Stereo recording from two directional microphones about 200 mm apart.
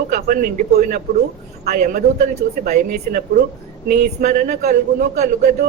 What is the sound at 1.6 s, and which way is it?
Music, 40° right (ahead or behind).